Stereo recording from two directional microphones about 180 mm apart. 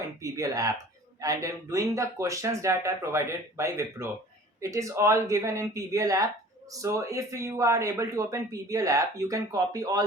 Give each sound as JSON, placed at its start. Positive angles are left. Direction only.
{"t": 0.2, "sound": "speech", "side_deg": -20}